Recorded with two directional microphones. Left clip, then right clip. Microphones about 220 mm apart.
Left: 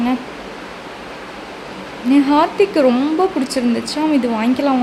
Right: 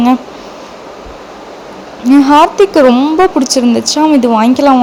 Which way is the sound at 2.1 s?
30° right (ahead or behind).